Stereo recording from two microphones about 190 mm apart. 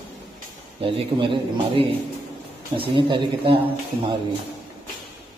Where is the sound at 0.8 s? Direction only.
25° right (ahead or behind).